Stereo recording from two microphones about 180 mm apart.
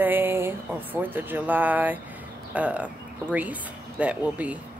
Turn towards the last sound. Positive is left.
turn(degrees=-10)  # may be behind; listen again after turning